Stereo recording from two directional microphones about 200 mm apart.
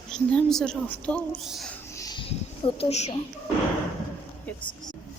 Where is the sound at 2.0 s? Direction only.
20° left (ahead or behind).